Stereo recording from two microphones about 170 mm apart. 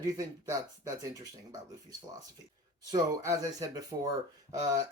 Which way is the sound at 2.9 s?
20° right (ahead or behind).